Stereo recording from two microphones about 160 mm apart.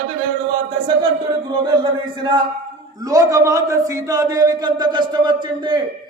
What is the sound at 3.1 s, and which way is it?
A man's voice, 20° right (ahead or behind).